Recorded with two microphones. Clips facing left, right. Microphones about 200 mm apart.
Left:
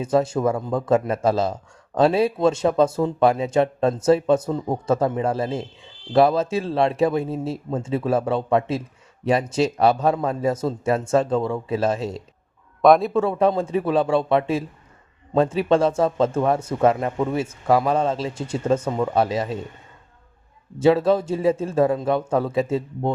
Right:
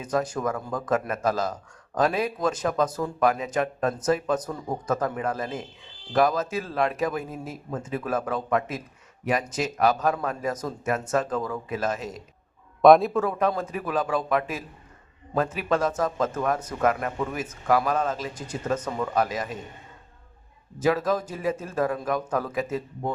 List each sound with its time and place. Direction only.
0.0 s speech: 25° left (ahead or behind)
12.8 s speech: centre (ahead or behind)
13.1 s speech: 25° left (ahead or behind)
20.7 s speech: 30° left (ahead or behind)